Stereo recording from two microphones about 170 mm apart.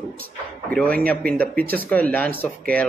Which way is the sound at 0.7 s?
5° left (ahead or behind).